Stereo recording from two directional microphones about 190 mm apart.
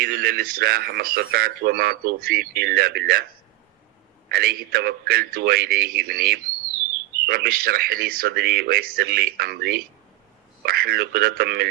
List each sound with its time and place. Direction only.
0.0 s speech: 55° right (ahead or behind)
4.3 s speech: 50° right (ahead or behind)